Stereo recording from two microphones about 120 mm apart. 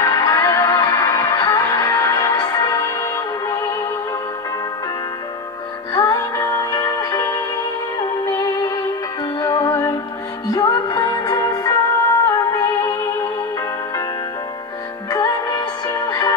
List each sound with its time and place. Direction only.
0.0 s music: 30° left (ahead or behind)
5.9 s music: 25° left (ahead or behind)
9.4 s music: 25° left (ahead or behind)
15.0 s music: 30° left (ahead or behind)